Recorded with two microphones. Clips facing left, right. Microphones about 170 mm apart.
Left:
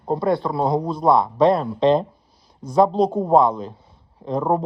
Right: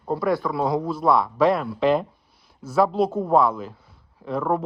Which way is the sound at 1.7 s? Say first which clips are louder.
Left 3 dB; 30° left (ahead or behind).